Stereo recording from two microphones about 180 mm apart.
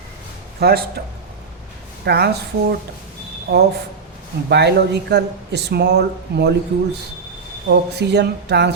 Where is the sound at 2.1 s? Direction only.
65° right (ahead or behind).